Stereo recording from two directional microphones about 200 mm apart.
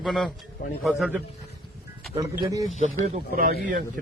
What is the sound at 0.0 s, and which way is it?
A man's voice, centre (ahead or behind).